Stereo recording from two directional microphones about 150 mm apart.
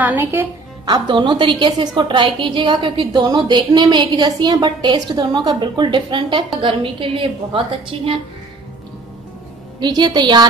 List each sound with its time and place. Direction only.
0.0 s speech: 15° right (ahead or behind)
0.8 s a woman's voice: 30° right (ahead or behind)
9.8 s a woman's voice: 30° right (ahead or behind)